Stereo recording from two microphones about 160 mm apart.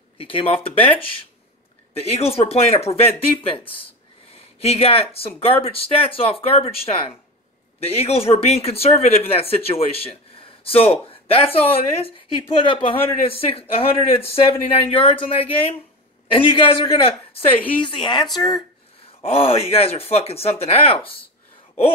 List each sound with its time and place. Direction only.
0.2 s a man's voice: 35° left (ahead or behind)
17.8 s speech: 30° left (ahead or behind)
19.2 s speech: 35° left (ahead or behind)